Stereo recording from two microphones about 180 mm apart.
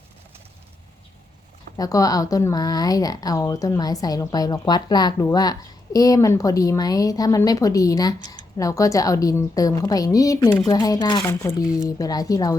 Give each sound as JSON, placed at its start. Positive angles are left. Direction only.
{"t": 1.7, "sound": "speech", "side_deg": 20}